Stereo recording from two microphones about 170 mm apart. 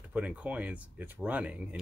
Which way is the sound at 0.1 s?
10° right (ahead or behind).